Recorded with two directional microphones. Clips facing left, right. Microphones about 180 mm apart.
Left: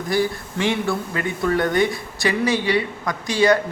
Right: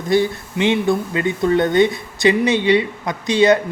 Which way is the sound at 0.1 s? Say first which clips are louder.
Right 5 dB; 20° right (ahead or behind).